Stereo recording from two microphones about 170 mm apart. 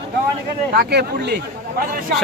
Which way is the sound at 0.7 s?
65° right (ahead or behind).